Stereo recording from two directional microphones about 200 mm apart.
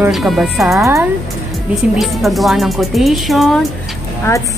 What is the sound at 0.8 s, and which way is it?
Speech, 15° right (ahead or behind).